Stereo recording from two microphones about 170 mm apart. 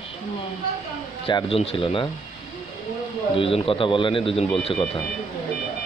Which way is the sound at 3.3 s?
30° left (ahead or behind).